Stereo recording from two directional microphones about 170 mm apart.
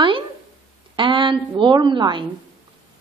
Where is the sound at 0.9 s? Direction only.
30° right (ahead or behind).